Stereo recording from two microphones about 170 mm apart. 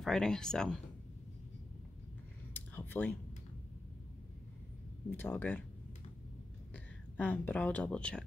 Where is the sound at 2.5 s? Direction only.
10° left (ahead or behind).